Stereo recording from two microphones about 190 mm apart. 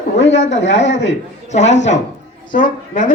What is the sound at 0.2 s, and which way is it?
Speech, 70° left (ahead or behind).